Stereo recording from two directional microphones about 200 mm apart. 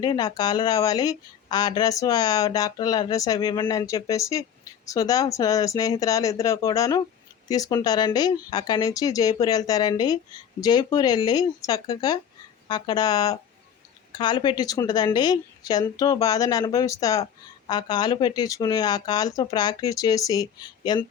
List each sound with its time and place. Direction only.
0.0 s speech: 20° left (ahead or behind)